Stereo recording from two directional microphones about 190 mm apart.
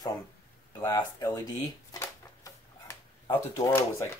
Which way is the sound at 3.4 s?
15° left (ahead or behind).